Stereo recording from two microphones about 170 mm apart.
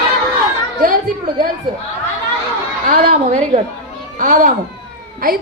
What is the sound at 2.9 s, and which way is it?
A woman's voice, 45° right (ahead or behind).